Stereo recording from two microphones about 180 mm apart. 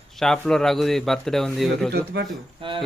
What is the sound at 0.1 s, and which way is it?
A man's voice, centre (ahead or behind).